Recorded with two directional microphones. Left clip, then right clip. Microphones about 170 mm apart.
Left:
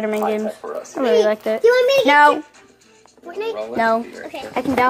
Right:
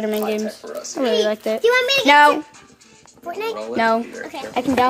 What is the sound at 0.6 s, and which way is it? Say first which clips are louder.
Speech: left 3 dB; 65° right (ahead or behind).